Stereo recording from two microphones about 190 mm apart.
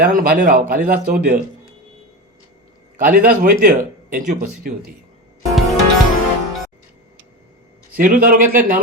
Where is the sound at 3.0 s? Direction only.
50° right (ahead or behind).